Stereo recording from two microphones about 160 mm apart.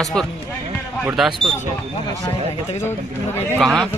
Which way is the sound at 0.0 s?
5° left (ahead or behind).